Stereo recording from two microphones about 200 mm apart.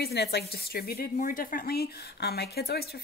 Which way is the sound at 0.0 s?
55° left (ahead or behind).